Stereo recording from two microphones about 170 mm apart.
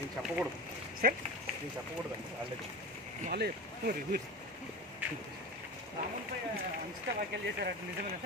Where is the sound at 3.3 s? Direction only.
65° right (ahead or behind).